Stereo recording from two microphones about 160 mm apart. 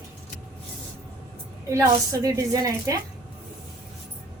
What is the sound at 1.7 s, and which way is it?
A woman's voice, 20° right (ahead or behind).